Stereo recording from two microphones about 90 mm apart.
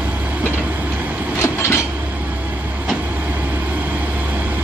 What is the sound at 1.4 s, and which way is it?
Vehicle, 30° left (ahead or behind).